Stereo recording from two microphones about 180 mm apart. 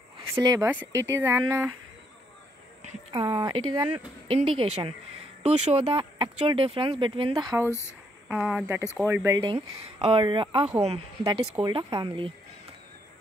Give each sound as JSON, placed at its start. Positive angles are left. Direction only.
{"t": 0.3, "sound": "speech", "side_deg": -20}
{"t": 3.1, "sound": "speech", "side_deg": -25}
{"t": 8.3, "sound": "speech", "side_deg": -5}